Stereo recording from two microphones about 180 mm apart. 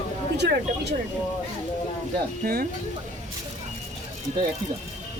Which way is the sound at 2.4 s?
55° right (ahead or behind).